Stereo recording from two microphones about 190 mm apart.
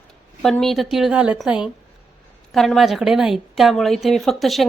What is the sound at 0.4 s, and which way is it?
A woman's voice, centre (ahead or behind).